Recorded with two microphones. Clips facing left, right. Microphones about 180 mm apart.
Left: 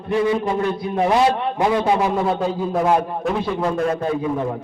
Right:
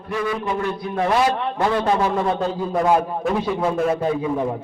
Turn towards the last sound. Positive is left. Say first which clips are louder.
# even
turn(degrees=-5)  # may be behind; listen again after turning